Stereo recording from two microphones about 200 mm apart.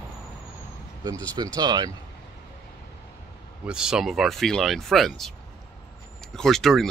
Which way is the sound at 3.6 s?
5° right (ahead or behind).